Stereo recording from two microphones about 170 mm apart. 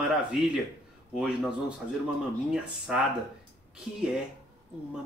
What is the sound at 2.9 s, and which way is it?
Speech, 5° right (ahead or behind).